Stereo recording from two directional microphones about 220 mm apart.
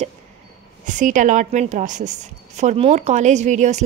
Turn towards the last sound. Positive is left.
turn(degrees=-30)  # may be behind; listen again after turning